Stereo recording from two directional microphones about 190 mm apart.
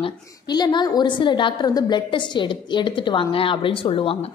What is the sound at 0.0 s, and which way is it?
A woman's voice, 20° left (ahead or behind).